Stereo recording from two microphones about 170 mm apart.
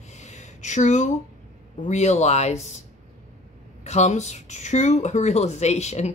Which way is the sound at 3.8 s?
40° left (ahead or behind).